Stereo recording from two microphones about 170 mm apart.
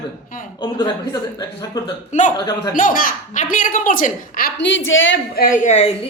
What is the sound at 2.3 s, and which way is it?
Speech, 25° left (ahead or behind).